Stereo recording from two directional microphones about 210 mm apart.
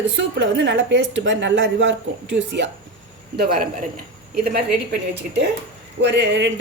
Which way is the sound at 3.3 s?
45° right (ahead or behind).